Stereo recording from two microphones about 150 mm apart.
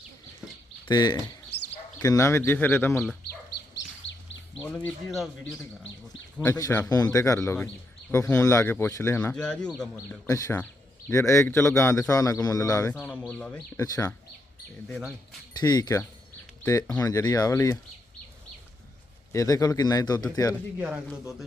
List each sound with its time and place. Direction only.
0.4 s a sound: 10° right (ahead or behind)
0.9 s a man's voice: 30° left (ahead or behind)
4.7 s speech: 5° left (ahead or behind)
6.4 s a man's voice: 20° left (ahead or behind)
9.3 s speech: 5° left (ahead or behind)
9.9 s a man's voice: 20° left (ahead or behind)
12.9 s speech: 10° left (ahead or behind)
13.7 s a man's voice: 20° left (ahead or behind)
14.8 s speech: centre (ahead or behind)
15.5 s a man's voice: 25° left (ahead or behind)
19.3 s a man's voice: 20° left (ahead or behind)
20.7 s speech: 5° right (ahead or behind)